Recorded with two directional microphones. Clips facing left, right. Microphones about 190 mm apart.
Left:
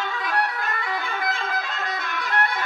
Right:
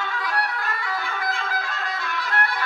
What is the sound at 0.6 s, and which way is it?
Music, 20° left (ahead or behind).